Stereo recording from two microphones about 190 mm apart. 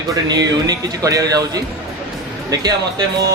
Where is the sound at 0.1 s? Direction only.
20° right (ahead or behind).